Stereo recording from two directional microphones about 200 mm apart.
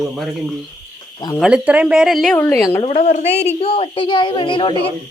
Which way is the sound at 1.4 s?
5° right (ahead or behind).